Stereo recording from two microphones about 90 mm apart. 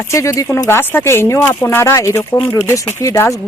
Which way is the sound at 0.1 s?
35° left (ahead or behind).